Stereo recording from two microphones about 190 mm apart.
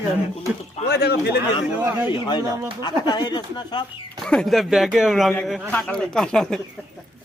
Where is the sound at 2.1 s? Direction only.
20° left (ahead or behind).